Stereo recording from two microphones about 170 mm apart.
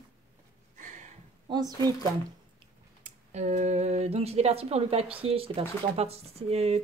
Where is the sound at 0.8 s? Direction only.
45° right (ahead or behind).